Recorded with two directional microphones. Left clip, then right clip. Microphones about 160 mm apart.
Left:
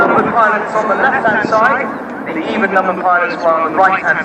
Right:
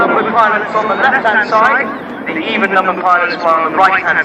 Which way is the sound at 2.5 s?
65° left (ahead or behind).